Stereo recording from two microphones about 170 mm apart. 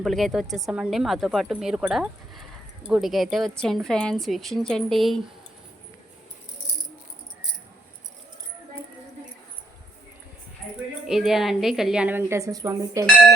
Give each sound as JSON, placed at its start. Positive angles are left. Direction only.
{"t": 0.0, "sound": "a woman's voice", "side_deg": 0}
{"t": 11.1, "sound": "a woman's voice", "side_deg": 0}